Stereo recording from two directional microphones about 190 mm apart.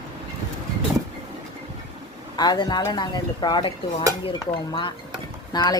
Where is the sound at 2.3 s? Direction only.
20° left (ahead or behind).